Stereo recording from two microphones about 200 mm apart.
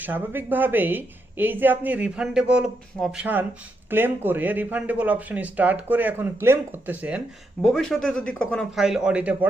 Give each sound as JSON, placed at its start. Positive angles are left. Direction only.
{"t": 0.0, "sound": "a man's voice", "side_deg": -10}